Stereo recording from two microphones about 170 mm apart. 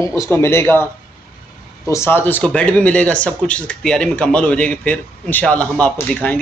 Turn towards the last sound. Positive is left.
turn(degrees=10)  # may be behind; listen again after turning